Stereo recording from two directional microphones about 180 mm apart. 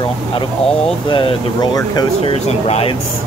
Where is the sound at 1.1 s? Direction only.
25° left (ahead or behind).